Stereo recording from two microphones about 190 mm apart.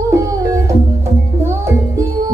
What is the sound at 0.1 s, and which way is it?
Music, 15° right (ahead or behind).